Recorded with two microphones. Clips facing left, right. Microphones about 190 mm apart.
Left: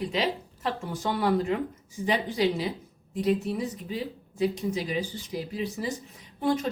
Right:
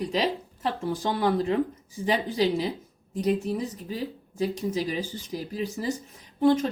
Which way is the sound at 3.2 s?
40° right (ahead or behind).